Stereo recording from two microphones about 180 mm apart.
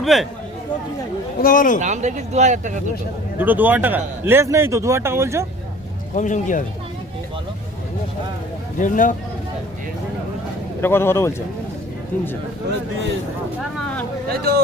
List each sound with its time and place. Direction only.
0.0 s speech: centre (ahead or behind)
1.4 s speech: 50° left (ahead or behind)
1.8 s speech: 40° right (ahead or behind)
3.3 s a man's voice: 10° right (ahead or behind)
6.1 s speech: 45° left (ahead or behind)
8.8 s speech: 45° left (ahead or behind)
10.8 s a man's voice: 15° left (ahead or behind)
13.6 s vehicle: centre (ahead or behind)
14.3 s speech: 60° right (ahead or behind)